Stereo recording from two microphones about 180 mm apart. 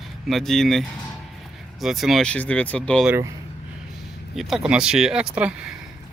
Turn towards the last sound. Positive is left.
turn(degrees=-5)  # may be behind; listen again after turning